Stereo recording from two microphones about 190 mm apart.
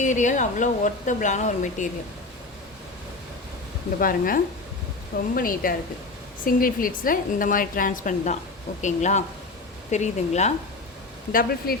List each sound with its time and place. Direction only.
0.0 s speech: 40° left (ahead or behind)
4.0 s a woman's voice: 50° left (ahead or behind)
11.3 s a woman's voice: 50° left (ahead or behind)